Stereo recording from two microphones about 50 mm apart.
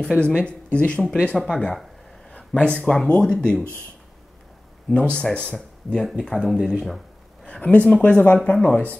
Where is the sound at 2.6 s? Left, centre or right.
Left.